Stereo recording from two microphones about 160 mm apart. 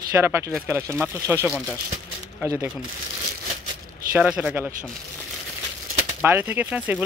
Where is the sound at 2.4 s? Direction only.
20° right (ahead or behind).